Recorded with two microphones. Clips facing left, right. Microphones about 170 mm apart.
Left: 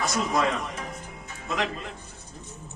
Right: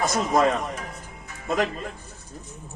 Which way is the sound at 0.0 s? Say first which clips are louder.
Right 4 dB; 50° right (ahead or behind).